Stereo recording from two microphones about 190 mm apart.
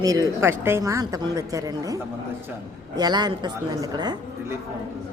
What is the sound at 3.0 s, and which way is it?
Speech, 20° right (ahead or behind).